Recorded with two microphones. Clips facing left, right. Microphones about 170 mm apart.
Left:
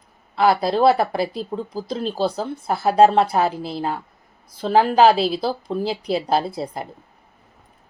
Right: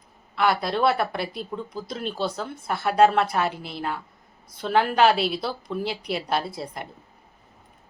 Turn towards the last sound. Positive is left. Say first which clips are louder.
# left 6 dB
turn(degrees=30)  # may be behind; listen again after turning